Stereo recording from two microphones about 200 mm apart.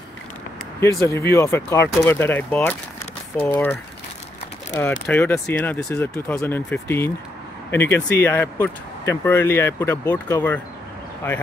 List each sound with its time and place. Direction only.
0.7 s speech: 15° left (ahead or behind)
5.0 s speech: 5° left (ahead or behind)